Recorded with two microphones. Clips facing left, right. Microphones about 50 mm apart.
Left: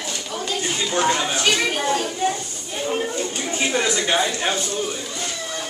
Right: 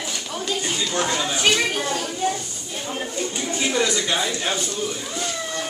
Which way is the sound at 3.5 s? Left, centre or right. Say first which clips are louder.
Even; left.